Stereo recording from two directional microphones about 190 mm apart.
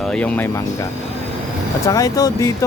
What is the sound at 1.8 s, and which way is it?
Speech, 15° left (ahead or behind).